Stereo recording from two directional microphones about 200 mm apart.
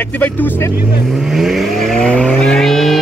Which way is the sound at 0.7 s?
10° right (ahead or behind).